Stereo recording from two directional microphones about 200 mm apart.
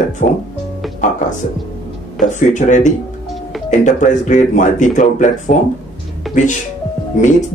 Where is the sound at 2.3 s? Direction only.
40° left (ahead or behind).